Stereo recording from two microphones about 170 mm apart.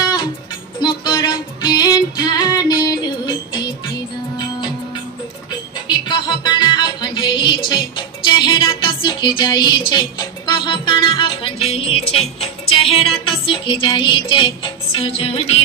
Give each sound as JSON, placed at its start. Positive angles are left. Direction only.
{"t": 0.7, "sound": "music", "side_deg": 25}
{"t": 6.0, "sound": "music", "side_deg": 25}